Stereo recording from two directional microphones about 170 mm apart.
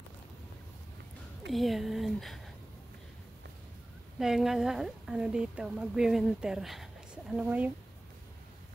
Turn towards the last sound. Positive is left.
turn(degrees=-10)  # may be behind; listen again after turning